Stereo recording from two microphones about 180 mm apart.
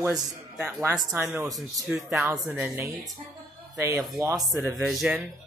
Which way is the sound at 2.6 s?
15° right (ahead or behind).